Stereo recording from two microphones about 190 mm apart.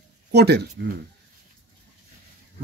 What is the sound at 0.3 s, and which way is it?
Speech, 60° right (ahead or behind).